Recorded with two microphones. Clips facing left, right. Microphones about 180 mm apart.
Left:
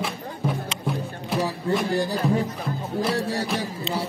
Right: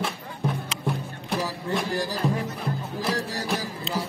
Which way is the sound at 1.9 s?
30° left (ahead or behind).